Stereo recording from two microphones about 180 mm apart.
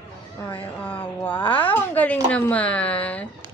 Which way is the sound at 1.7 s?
10° left (ahead or behind).